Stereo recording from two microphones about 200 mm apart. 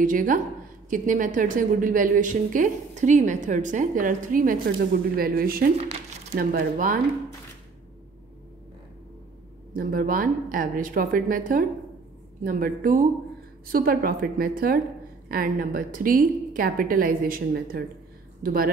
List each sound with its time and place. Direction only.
0.0 s a woman's voice: 40° right (ahead or behind)
5.8 s a sound: 30° right (ahead or behind)
6.5 s a woman's voice: 45° right (ahead or behind)
9.8 s a woman's voice: 45° right (ahead or behind)